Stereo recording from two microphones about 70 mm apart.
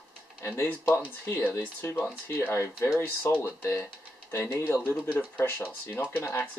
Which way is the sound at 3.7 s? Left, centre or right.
Left.